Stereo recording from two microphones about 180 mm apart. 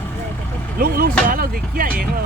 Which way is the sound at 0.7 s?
55° right (ahead or behind).